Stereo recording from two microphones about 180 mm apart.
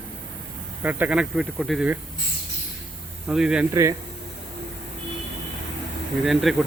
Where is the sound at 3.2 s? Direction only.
5° right (ahead or behind).